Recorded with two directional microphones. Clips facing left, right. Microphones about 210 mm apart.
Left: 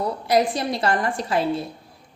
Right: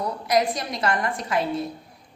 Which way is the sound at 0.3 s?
30° left (ahead or behind).